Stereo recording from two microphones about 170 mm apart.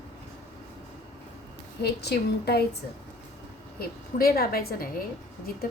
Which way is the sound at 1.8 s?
70° left (ahead or behind).